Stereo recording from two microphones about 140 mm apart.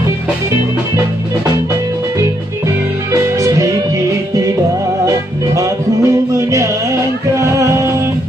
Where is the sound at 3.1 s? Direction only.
25° right (ahead or behind).